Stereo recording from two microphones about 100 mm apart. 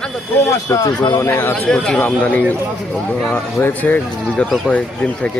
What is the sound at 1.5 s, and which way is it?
Speech, 5° left (ahead or behind).